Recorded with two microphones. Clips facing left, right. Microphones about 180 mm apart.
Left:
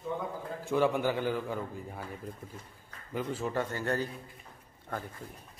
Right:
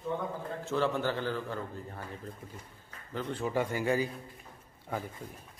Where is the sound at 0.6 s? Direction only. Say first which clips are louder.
Left 3 dB; 15° left (ahead or behind).